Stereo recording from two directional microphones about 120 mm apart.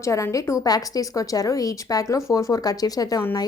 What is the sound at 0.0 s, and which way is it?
A woman's voice, 25° left (ahead or behind).